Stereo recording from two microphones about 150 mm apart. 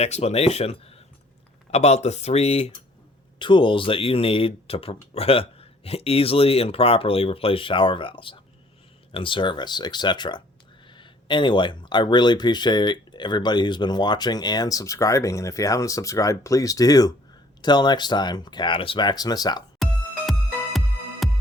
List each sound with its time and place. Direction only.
0.0 s speech: 45° left (ahead or behind)
3.3 s speech: 30° left (ahead or behind)
21.2 s music: centre (ahead or behind)